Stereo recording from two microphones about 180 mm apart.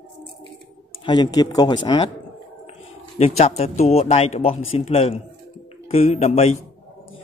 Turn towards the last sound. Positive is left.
turn(degrees=35)  # may be behind; listen again after turning